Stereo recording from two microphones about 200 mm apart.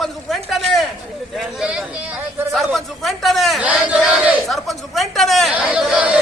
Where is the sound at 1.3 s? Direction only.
Centre (ahead or behind).